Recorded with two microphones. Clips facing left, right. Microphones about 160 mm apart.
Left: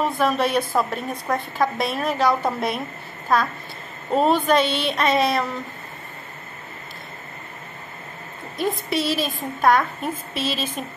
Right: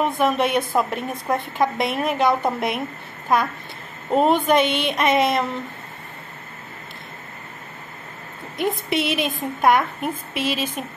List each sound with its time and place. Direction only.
0.0 s a woman's voice: 20° right (ahead or behind)
8.5 s a woman's voice: 20° right (ahead or behind)